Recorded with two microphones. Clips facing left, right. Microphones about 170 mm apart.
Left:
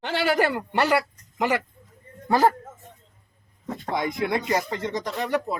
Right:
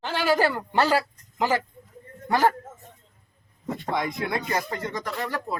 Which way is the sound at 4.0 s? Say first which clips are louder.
Left 5 dB; 20° left (ahead or behind).